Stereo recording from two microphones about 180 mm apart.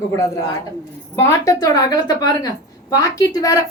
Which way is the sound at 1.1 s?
15° left (ahead or behind).